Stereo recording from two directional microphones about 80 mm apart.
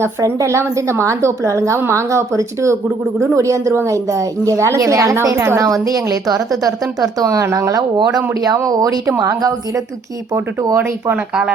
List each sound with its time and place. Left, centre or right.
0.2 s a woman's voice: right
5.8 s a woman's voice: right